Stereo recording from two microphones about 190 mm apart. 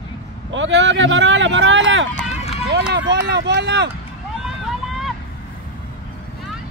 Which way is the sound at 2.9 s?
65° right (ahead or behind).